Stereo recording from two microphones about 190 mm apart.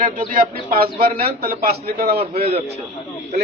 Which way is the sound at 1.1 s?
55° right (ahead or behind).